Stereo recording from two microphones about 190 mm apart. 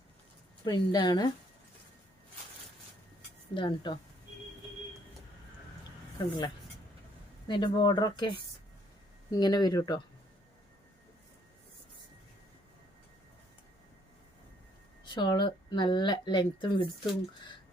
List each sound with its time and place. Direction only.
0.6 s speech: 20° left (ahead or behind)
3.5 s speech: 25° left (ahead or behind)
7.4 s speech: 25° left (ahead or behind)
15.0 s speech: 25° left (ahead or behind)